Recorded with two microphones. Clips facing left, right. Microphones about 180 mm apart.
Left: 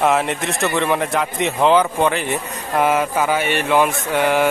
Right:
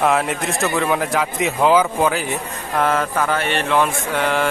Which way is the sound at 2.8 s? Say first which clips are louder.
Left 2 dB; 10° left (ahead or behind).